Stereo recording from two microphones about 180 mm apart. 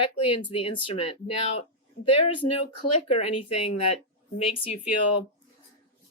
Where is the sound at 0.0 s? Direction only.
30° left (ahead or behind).